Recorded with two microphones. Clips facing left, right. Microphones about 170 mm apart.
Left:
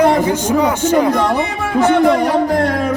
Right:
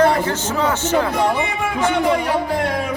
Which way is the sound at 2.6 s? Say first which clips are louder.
Left 5 dB; 10° right (ahead or behind).